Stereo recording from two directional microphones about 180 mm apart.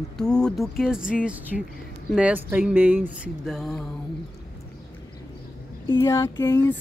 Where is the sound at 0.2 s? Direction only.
5° left (ahead or behind).